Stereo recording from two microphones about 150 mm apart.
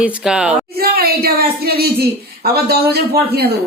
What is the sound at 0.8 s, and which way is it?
Speech, 90° right.